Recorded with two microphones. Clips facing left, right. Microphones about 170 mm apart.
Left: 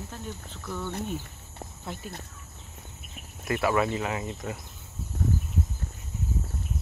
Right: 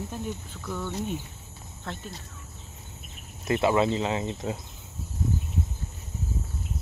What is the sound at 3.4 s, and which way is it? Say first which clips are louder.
Speech: right 3 dB; 25° right (ahead or behind).